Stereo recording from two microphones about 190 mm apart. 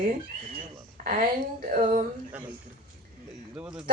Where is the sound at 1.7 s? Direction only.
45° right (ahead or behind).